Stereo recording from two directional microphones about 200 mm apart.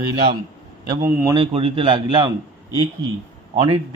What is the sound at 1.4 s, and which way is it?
Speech, 30° right (ahead or behind).